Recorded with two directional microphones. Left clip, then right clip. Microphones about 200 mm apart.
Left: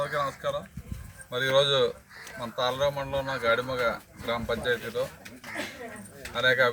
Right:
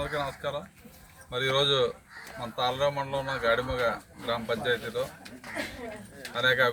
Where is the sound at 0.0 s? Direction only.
10° right (ahead or behind).